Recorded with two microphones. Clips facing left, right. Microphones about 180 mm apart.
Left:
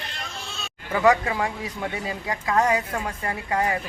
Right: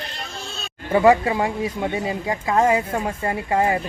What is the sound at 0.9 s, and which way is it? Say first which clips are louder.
Speech: right 5 dB; 30° right (ahead or behind).